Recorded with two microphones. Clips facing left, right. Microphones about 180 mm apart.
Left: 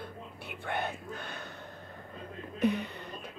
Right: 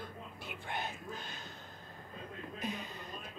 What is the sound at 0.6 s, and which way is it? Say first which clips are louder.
Whispering: left 7 dB; 65° left (ahead or behind).